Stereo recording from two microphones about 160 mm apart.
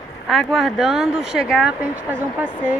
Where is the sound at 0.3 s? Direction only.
Centre (ahead or behind).